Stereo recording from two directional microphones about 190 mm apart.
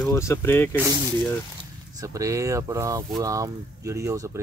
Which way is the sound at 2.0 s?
15° right (ahead or behind).